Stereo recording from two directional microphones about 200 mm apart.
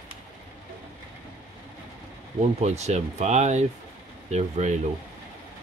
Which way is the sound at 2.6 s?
35° right (ahead or behind).